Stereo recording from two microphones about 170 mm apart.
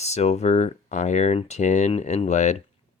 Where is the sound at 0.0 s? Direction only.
40° left (ahead or behind).